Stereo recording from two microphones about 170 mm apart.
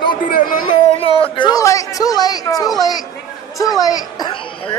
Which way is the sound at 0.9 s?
30° left (ahead or behind).